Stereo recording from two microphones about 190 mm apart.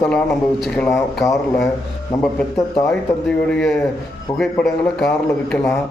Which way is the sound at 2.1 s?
20° left (ahead or behind).